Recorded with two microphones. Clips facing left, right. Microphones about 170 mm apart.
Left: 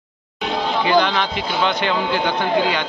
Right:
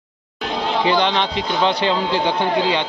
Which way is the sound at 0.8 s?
25° right (ahead or behind).